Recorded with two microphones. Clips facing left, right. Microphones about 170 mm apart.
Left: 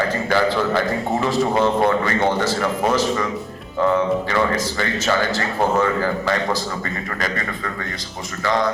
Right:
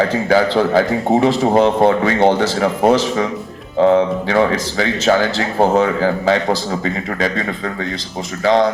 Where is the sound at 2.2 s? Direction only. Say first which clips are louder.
Right 8 dB; 65° right (ahead or behind).